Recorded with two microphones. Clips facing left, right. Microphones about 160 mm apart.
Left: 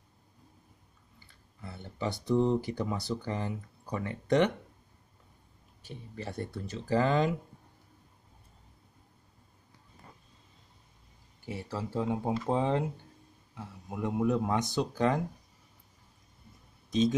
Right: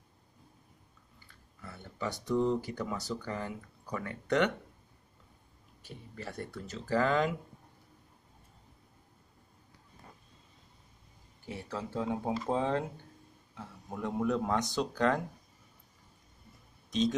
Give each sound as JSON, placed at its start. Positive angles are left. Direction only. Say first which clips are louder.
{"t": 1.6, "sound": "speech", "louder": "left 3 dB", "side_deg": 25}
{"t": 6.1, "sound": "speech", "louder": "left 3 dB", "side_deg": 25}
{"t": 11.4, "sound": "speech", "louder": "left 2 dB", "side_deg": 5}